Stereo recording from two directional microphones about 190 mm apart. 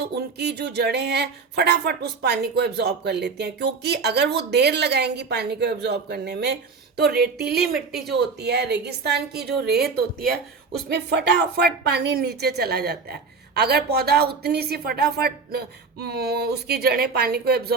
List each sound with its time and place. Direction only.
0.0 s speech: 60° right (ahead or behind)